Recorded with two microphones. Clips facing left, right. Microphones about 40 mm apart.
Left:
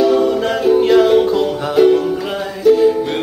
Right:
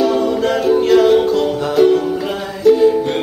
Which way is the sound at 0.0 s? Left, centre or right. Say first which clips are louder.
Left 2 dB; centre.